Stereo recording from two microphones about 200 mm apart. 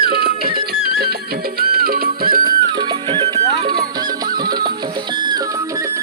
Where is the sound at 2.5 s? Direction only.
20° right (ahead or behind).